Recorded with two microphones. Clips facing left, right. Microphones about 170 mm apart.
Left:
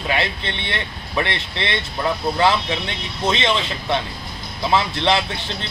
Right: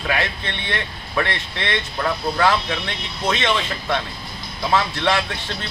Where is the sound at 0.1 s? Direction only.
25° left (ahead or behind).